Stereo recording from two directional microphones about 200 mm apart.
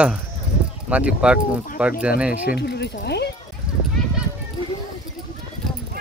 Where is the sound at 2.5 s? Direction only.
55° left (ahead or behind).